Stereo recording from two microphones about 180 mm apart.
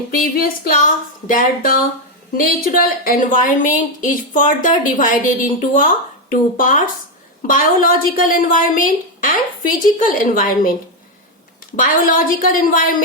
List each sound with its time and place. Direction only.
0.2 s a woman's voice: 55° left (ahead or behind)
11.8 s a woman's voice: 50° left (ahead or behind)